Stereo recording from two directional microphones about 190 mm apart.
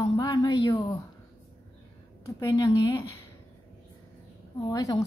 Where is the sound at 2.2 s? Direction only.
15° left (ahead or behind).